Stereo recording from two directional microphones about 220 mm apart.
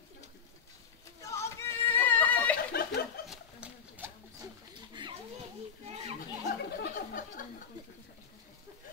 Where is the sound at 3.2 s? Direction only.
5° right (ahead or behind).